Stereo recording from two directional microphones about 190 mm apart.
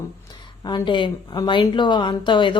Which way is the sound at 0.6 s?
20° left (ahead or behind).